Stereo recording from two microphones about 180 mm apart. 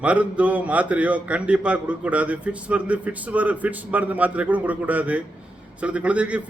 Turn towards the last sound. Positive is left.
turn(degrees=-5)  # may be behind; listen again after turning